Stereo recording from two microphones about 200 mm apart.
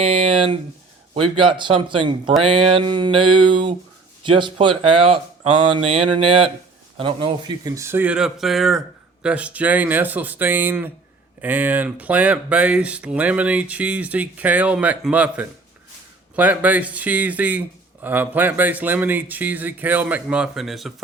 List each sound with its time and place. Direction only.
0.0 s speech: 30° right (ahead or behind); by 20.9 s centre (ahead or behind)